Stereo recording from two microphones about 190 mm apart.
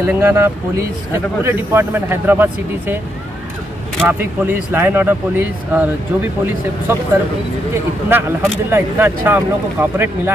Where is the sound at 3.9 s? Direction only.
10° right (ahead or behind).